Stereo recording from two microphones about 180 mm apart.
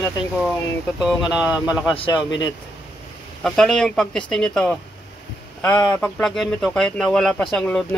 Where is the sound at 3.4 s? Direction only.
5° left (ahead or behind).